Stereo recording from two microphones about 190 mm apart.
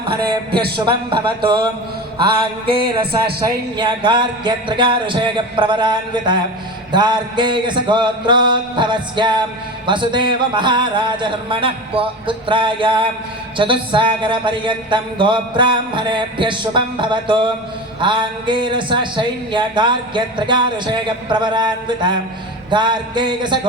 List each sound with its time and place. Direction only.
0.1 s a man's voice: 25° right (ahead or behind)